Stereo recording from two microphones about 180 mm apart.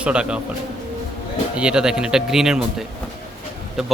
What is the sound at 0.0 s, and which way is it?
Speech, 5° right (ahead or behind).